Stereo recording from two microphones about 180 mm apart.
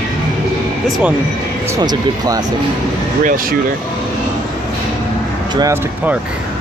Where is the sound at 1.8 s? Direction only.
20° right (ahead or behind).